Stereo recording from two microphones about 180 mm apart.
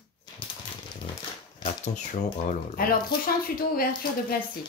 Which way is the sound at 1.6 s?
40° left (ahead or behind).